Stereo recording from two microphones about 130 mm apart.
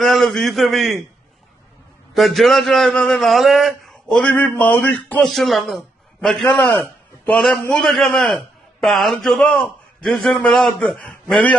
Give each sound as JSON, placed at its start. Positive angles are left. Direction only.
{"t": 0.0, "sound": "a man's voice", "side_deg": 5}
{"t": 2.1, "sound": "a man's voice", "side_deg": 0}
{"t": 5.2, "sound": "a man's voice", "side_deg": 0}